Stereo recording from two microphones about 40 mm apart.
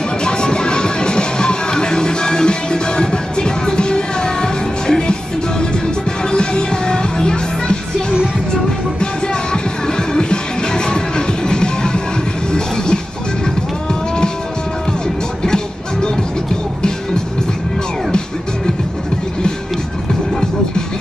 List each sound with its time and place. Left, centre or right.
0.2 s music: left
6.3 s music: left
9.0 s music: left
15.4 s music: centre